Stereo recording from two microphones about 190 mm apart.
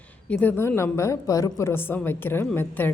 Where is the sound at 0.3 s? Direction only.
10° left (ahead or behind).